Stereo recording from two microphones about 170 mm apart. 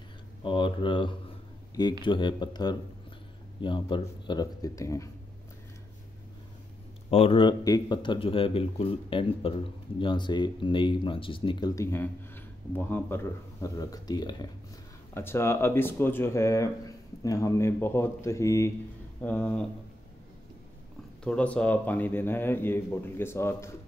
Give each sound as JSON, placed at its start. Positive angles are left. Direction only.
{"t": 0.4, "sound": "speech", "side_deg": 30}
{"t": 7.1, "sound": "speech", "side_deg": 35}
{"t": 21.2, "sound": "speech", "side_deg": 5}